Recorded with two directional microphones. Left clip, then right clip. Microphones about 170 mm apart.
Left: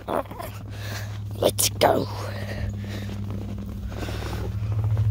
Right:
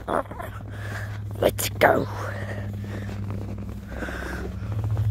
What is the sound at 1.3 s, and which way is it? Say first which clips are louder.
Speech: left 1 dB; centre (ahead or behind).